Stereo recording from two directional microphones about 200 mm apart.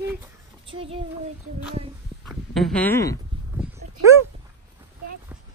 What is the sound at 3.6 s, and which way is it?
Dog, 15° right (ahead or behind).